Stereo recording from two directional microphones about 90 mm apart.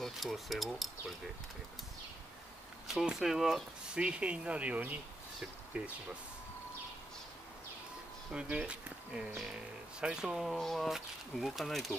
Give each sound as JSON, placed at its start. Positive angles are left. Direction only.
{"t": 0.0, "sound": "speech", "side_deg": 0}
{"t": 2.9, "sound": "speech", "side_deg": -5}
{"t": 8.3, "sound": "speech", "side_deg": -15}